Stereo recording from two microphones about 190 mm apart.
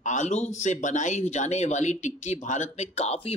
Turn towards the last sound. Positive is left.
turn(degrees=35)  # may be behind; listen again after turning